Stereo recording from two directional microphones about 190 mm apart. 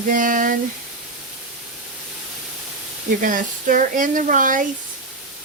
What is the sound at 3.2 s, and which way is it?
Speech, 45° right (ahead or behind).